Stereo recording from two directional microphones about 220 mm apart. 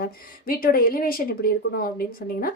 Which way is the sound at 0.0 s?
40° left (ahead or behind).